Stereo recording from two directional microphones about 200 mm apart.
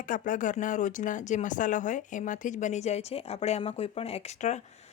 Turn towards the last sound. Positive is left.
turn(degrees=35)  # may be behind; listen again after turning